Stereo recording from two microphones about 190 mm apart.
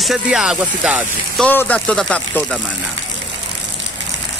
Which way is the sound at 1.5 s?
10° left (ahead or behind).